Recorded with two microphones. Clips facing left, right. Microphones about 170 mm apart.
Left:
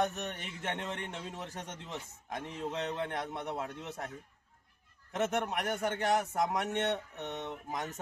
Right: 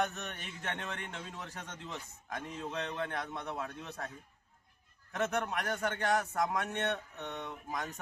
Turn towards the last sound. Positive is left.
turn(degrees=20)  # may be behind; listen again after turning